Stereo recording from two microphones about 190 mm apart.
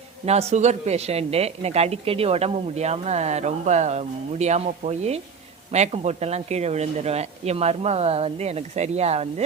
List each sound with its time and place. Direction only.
0.3 s a man's voice: 35° right (ahead or behind)